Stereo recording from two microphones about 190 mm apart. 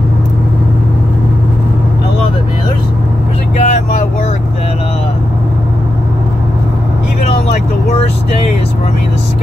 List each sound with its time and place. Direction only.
3.5 s vehicle: 35° left (ahead or behind)
7.5 s vehicle: 35° left (ahead or behind)